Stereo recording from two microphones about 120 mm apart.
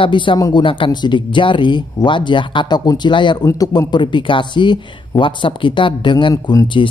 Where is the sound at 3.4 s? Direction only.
30° left (ahead or behind).